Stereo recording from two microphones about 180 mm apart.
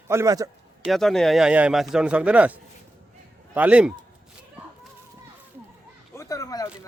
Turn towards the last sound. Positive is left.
turn(degrees=20)  # may be behind; listen again after turning